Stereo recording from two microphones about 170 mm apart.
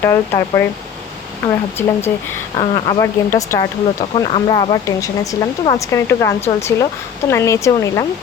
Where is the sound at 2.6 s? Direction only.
30° left (ahead or behind).